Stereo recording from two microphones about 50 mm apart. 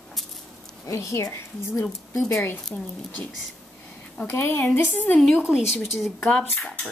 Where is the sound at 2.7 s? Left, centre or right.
Left.